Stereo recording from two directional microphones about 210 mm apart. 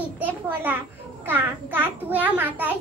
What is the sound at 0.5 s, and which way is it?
A child's voice, 10° right (ahead or behind).